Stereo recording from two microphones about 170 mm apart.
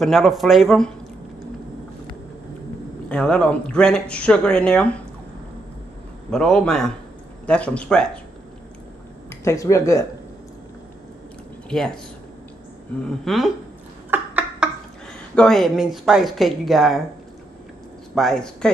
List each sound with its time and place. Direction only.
0.0 s speech: centre (ahead or behind)
3.1 s speech: 5° left (ahead or behind)
6.3 s speech: 5° left (ahead or behind)
9.3 s speech: 15° left (ahead or behind)
11.7 s speech: 5° left (ahead or behind)
13.0 s speech: centre (ahead or behind)
14.1 s a sound: 10° right (ahead or behind)
15.3 s speech: 5° left (ahead or behind)
18.1 s speech: 5° left (ahead or behind)